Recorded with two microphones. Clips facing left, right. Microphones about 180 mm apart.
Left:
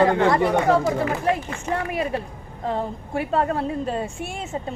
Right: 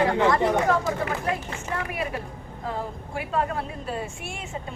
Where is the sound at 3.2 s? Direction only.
35° left (ahead or behind).